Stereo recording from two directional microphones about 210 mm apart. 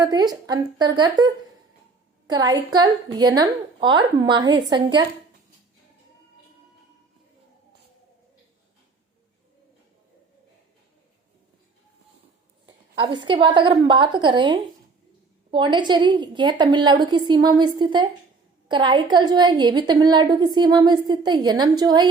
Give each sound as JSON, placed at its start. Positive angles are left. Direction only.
{"t": 0.0, "sound": "a woman's voice", "side_deg": -20}
{"t": 12.6, "sound": "a woman's voice", "side_deg": -20}